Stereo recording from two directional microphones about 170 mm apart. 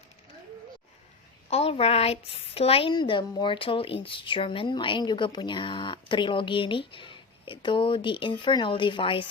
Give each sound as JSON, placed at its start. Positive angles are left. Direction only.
{"t": 1.5, "sound": "a woman's voice", "side_deg": 35}